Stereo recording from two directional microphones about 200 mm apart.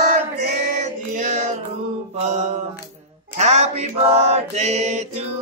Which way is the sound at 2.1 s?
35° right (ahead or behind).